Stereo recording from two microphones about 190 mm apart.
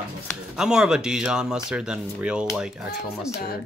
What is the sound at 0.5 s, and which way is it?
Speech, 5° right (ahead or behind).